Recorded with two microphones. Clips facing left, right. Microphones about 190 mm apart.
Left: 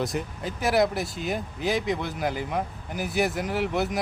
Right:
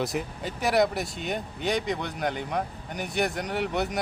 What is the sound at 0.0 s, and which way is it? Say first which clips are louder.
Speech: left 1 dB; centre (ahead or behind).